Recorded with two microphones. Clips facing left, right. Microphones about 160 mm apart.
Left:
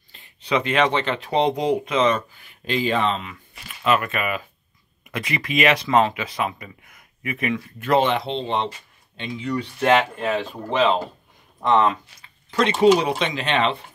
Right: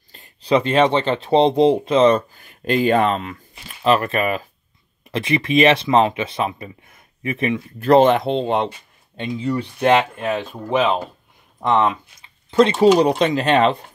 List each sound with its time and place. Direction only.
0.1 s speech: 40° right (ahead or behind)
3.8 s speech: 35° right (ahead or behind)
5.1 s speech: 25° right (ahead or behind); by 9.5 s 40° right (ahead or behind)
9.8 s speech: 10° right (ahead or behind)
12.4 s speech: 30° right (ahead or behind)